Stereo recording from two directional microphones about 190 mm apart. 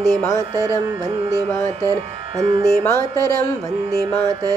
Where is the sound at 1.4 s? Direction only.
10° left (ahead or behind).